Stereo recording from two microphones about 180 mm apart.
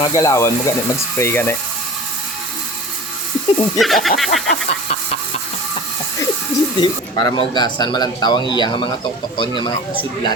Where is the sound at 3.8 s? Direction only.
Centre (ahead or behind).